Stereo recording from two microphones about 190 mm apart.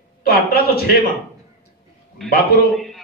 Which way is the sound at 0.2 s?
55° left (ahead or behind).